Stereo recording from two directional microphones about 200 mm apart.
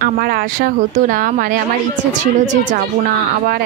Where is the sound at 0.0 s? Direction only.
50° right (ahead or behind).